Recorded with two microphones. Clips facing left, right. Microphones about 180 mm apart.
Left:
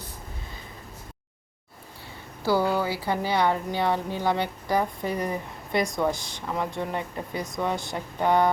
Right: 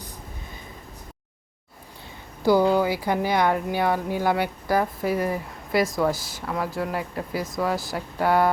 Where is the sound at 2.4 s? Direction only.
15° right (ahead or behind).